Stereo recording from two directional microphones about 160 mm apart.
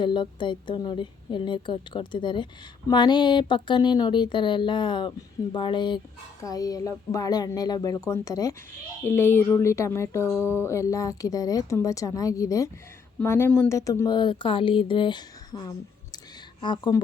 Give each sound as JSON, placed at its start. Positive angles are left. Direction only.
{"t": 0.0, "sound": "a woman's voice", "side_deg": 30}